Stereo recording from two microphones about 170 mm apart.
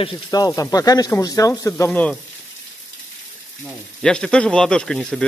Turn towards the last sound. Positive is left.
turn(degrees=5)  # may be behind; listen again after turning